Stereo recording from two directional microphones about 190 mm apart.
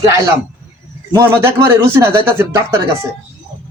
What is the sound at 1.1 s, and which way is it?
A man's voice, 10° right (ahead or behind).